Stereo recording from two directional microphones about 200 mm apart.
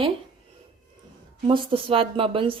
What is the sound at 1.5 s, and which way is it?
A woman's voice, 25° right (ahead or behind).